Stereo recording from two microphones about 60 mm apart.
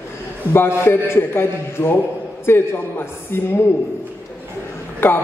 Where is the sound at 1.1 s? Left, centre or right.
Left.